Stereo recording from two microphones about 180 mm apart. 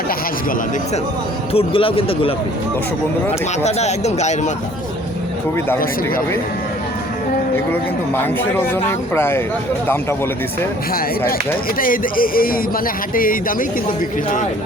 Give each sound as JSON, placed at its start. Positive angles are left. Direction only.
{"t": 1.5, "sound": "speech", "side_deg": 30}
{"t": 3.6, "sound": "speech", "side_deg": 40}
{"t": 8.7, "sound": "speech", "side_deg": 10}
{"t": 11.8, "sound": "speech", "side_deg": 50}